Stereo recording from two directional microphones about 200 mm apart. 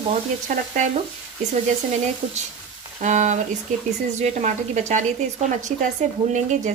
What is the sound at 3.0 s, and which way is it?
Speech, 35° right (ahead or behind).